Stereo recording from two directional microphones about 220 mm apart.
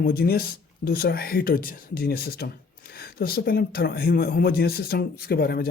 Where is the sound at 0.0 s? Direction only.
40° left (ahead or behind).